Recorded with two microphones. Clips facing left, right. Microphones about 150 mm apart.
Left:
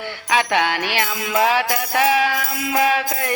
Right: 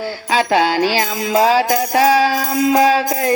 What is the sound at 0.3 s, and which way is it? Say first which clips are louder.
Music: right 4 dB; 30° right (ahead or behind).